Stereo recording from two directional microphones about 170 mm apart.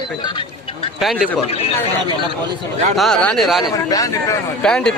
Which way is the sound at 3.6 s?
20° left (ahead or behind).